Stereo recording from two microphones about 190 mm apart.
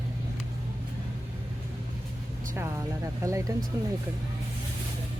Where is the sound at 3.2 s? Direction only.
15° right (ahead or behind).